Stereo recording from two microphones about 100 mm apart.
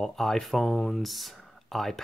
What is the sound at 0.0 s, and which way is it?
Speech, 5° left (ahead or behind).